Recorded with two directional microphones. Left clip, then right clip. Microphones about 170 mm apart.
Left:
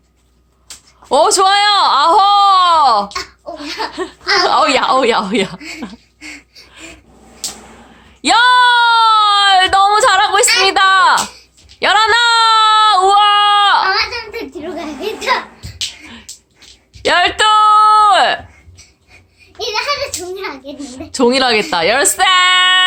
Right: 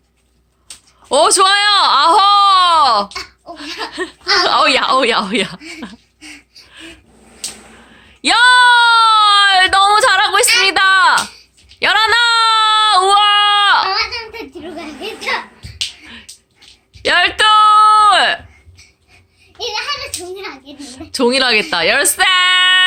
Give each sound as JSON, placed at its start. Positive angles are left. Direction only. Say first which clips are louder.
{"t": 1.1, "sound": "speech", "louder": "left 1 dB", "side_deg": 5}
{"t": 3.8, "sound": "laughter", "louder": "left 1 dB", "side_deg": 0}
{"t": 4.4, "sound": "speech", "louder": "even", "side_deg": 0}
{"t": 7.9, "sound": "a sound", "louder": "left 1 dB", "side_deg": 0}
{"t": 11.8, "sound": "child singing", "louder": "left 1 dB", "side_deg": 0}
{"t": 13.9, "sound": "giggle", "louder": "left 2 dB", "side_deg": 20}
{"t": 17.0, "sound": "a sound", "louder": "even", "side_deg": 0}
{"t": 20.7, "sound": "a woman's voice", "louder": "left 1 dB", "side_deg": 0}